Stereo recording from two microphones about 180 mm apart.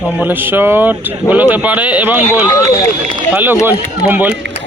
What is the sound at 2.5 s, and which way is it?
Speech, 20° left (ahead or behind).